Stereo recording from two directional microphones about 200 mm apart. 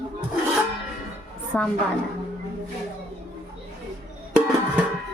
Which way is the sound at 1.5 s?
5° left (ahead or behind).